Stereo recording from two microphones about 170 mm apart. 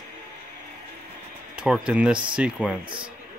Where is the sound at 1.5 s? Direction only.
5° right (ahead or behind).